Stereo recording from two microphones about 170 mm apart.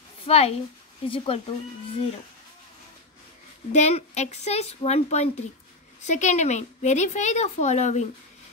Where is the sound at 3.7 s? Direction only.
40° left (ahead or behind).